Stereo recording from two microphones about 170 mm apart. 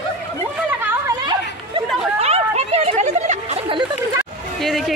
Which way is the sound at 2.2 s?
40° right (ahead or behind).